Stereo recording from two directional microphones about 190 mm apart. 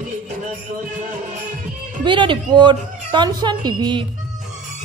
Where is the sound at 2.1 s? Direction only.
25° right (ahead or behind).